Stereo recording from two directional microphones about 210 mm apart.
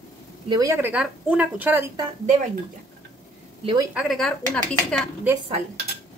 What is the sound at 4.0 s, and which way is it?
A woman's voice, centre (ahead or behind).